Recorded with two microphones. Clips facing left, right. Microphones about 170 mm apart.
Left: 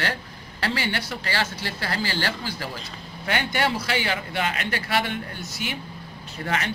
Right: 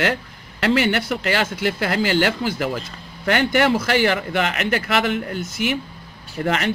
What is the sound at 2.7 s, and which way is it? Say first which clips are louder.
Speech: right 8 dB; 60° right (ahead or behind).